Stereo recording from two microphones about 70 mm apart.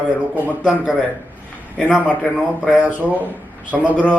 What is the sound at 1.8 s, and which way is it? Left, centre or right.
Speech, centre.